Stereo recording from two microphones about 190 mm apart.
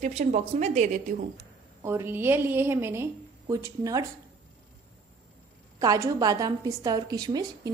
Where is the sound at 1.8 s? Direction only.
15° right (ahead or behind).